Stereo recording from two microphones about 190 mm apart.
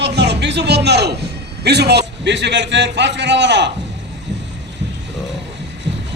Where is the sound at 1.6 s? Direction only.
60° right (ahead or behind).